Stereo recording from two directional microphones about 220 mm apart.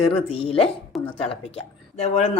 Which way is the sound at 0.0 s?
25° left (ahead or behind).